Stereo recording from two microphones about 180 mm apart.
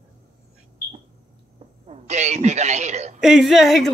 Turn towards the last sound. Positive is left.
turn(degrees=0)  # may be behind; listen again after turning